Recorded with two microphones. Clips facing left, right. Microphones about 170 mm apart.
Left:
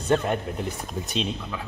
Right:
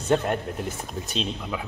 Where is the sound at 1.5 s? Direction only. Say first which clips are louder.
Right 3 dB; 15° right (ahead or behind).